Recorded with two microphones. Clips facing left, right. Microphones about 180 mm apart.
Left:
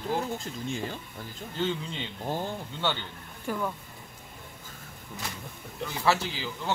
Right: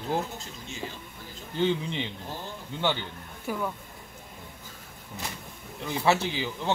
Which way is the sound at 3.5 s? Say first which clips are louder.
Even; 10° right (ahead or behind).